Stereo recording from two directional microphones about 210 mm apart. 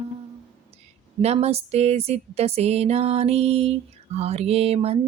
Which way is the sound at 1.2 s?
30° right (ahead or behind).